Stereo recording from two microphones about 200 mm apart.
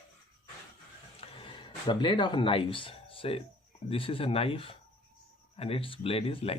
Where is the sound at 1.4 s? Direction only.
25° left (ahead or behind).